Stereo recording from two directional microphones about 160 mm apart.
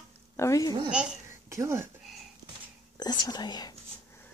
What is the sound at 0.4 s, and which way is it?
Speech, 20° left (ahead or behind).